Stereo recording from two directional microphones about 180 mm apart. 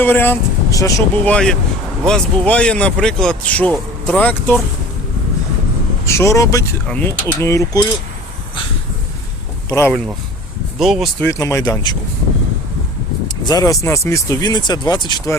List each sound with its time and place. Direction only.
0.0 s speech: 10° left (ahead or behind)
1.2 s speech: 5° left (ahead or behind)
6.1 s mechanisms: 15° left (ahead or behind)
9.6 s speech: 15° left (ahead or behind)
10.8 s speech: centre (ahead or behind)
11.2 s mechanisms: 15° left (ahead or behind)
13.4 s speech: 20° left (ahead or behind)